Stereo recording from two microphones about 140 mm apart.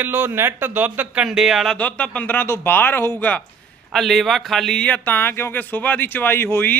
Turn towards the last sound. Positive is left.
turn(degrees=15)  # may be behind; listen again after turning